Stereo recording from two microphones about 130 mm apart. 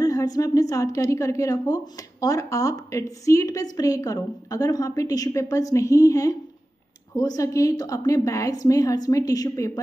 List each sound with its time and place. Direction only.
0.0 s a woman's voice: 25° left (ahead or behind)